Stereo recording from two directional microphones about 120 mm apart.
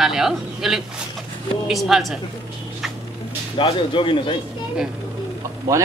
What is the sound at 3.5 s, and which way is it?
Speech, 45° left (ahead or behind).